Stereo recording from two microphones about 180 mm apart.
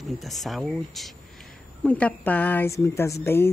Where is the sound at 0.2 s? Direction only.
Centre (ahead or behind).